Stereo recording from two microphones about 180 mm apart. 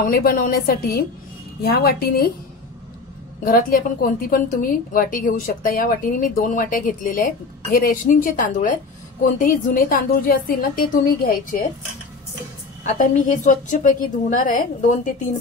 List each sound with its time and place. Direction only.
0.0 s a woman's voice: 55° left (ahead or behind)
3.4 s a woman's voice: 55° left (ahead or behind)
12.8 s a woman's voice: 45° left (ahead or behind)